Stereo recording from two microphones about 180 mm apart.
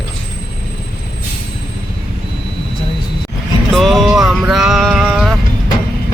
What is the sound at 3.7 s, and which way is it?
Music, centre (ahead or behind).